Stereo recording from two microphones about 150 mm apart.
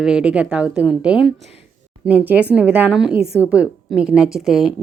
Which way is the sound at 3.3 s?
20° left (ahead or behind).